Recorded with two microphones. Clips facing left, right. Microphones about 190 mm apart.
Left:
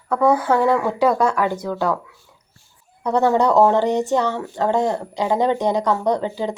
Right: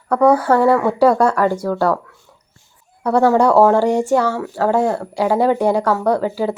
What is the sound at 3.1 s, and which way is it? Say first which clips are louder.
Speech: right 3 dB; 10° right (ahead or behind).